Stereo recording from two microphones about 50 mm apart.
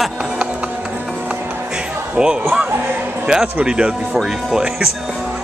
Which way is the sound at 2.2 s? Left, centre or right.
Centre.